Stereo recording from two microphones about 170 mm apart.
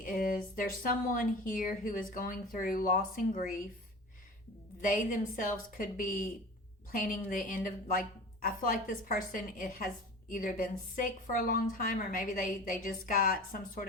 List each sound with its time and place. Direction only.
0.0 s a woman's voice: 55° left (ahead or behind)
4.8 s a woman's voice: 50° left (ahead or behind)